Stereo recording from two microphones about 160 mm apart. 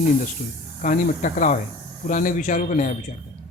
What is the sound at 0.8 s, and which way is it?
A man's voice, 55° left (ahead or behind).